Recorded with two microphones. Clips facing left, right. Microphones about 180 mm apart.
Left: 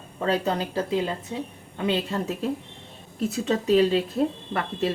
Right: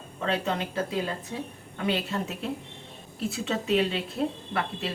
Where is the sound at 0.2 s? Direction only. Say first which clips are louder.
Left 4 dB; 35° left (ahead or behind).